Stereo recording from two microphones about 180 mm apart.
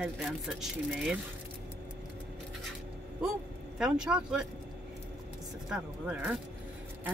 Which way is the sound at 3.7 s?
5° right (ahead or behind).